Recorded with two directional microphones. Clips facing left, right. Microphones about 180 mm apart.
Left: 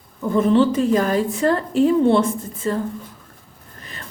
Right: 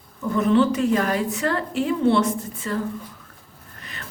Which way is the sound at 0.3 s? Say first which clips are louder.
Left 3 dB; 30° left (ahead or behind).